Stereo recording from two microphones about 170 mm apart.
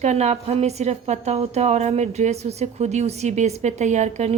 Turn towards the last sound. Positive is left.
turn(degrees=-40)  # may be behind; listen again after turning